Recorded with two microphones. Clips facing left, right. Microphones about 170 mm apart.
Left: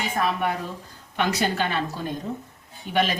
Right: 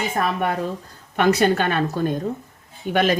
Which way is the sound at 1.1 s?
50° right (ahead or behind).